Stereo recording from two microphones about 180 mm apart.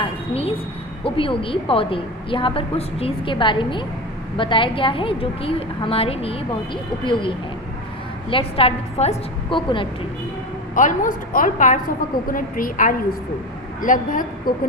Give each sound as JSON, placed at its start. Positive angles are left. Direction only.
{"t": 1.0, "sound": "a woman's voice", "side_deg": 30}
{"t": 10.8, "sound": "a woman's voice", "side_deg": 45}